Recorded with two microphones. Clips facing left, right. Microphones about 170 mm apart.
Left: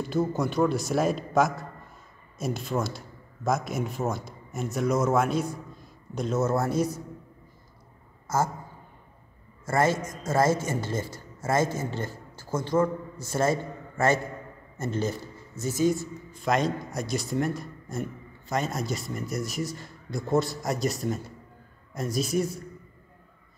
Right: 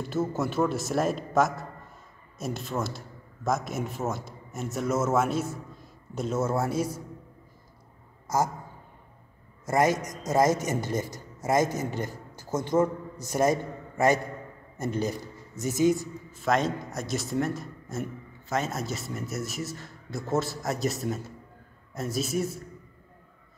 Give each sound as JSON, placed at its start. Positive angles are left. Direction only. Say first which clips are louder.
{"t": 0.1, "sound": "a man's voice", "louder": "left 1 dB", "side_deg": -5}
{"t": 8.3, "sound": "speech", "louder": "even", "side_deg": -10}
{"t": 9.7, "sound": "a man's voice", "louder": "right 1 dB", "side_deg": -15}
{"t": 16.3, "sound": "a man's voice", "louder": "even", "side_deg": 0}